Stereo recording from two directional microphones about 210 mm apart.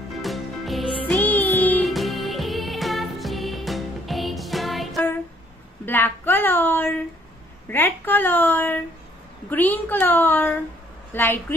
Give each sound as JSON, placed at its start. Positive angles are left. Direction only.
{"t": 0.2, "sound": "music", "side_deg": 0}
{"t": 5.9, "sound": "a sound", "side_deg": 10}
{"t": 9.5, "sound": "a woman's voice", "side_deg": 10}